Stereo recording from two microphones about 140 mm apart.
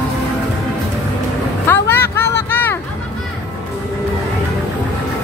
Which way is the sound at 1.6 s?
15° left (ahead or behind).